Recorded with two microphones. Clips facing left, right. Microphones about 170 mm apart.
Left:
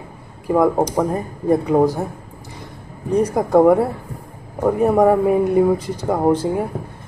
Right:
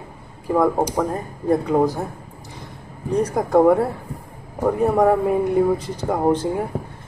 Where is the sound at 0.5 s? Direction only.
10° left (ahead or behind).